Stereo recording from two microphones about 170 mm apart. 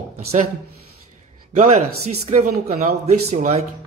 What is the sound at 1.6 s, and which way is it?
Speech, 40° right (ahead or behind).